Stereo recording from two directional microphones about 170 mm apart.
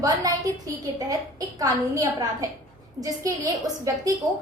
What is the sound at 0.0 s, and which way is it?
A woman's voice, 20° right (ahead or behind).